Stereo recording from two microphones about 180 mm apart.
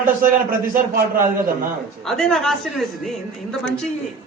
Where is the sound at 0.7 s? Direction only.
50° right (ahead or behind).